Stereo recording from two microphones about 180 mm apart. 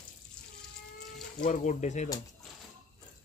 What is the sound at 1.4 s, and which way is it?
Speech, 40° left (ahead or behind).